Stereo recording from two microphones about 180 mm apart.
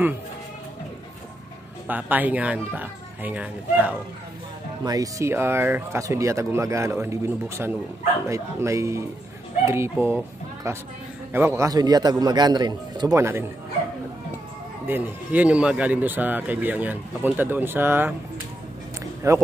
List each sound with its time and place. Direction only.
1.9 s speech: 10° right (ahead or behind)
4.8 s a man's voice: 20° right (ahead or behind)
14.9 s speech: 10° right (ahead or behind)
19.2 s speech: 15° right (ahead or behind)